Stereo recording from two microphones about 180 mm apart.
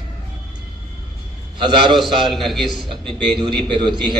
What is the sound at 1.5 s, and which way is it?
Speech, 25° right (ahead or behind).